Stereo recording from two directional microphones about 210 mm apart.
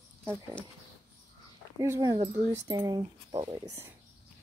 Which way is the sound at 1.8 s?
15° right (ahead or behind).